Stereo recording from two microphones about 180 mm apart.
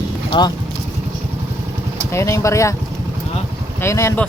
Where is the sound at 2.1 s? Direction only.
15° left (ahead or behind).